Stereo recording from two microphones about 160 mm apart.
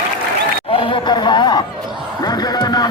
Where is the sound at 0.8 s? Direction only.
30° left (ahead or behind).